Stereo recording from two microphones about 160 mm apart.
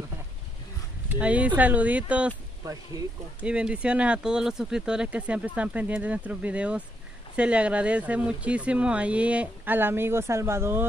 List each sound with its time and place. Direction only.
1.0 s speech: 10° right (ahead or behind)
2.6 s speech: 20° right (ahead or behind)
3.4 s speech: 5° right (ahead or behind)